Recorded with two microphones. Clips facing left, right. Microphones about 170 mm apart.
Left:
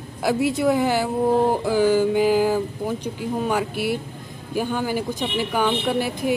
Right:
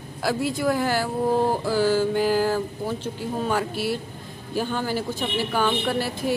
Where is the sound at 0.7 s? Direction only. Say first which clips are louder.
Left 3 dB; 20° left (ahead or behind).